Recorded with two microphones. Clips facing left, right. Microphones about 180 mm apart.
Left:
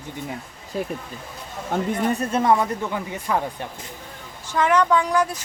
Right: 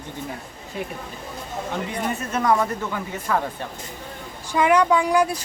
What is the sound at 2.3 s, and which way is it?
Speech, 25° left (ahead or behind).